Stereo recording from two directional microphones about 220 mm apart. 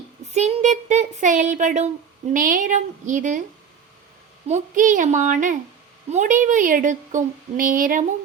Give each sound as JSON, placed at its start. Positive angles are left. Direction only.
{"t": 0.3, "sound": "a woman's voice", "side_deg": -30}
{"t": 4.4, "sound": "a woman's voice", "side_deg": -35}